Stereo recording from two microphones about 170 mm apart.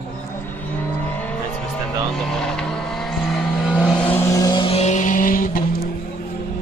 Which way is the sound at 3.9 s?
10° left (ahead or behind).